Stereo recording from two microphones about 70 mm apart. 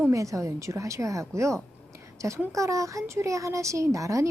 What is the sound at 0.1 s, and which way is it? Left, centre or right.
Speech, right.